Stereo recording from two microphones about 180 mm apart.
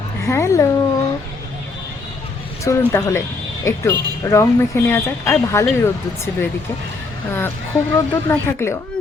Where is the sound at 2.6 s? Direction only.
15° left (ahead or behind).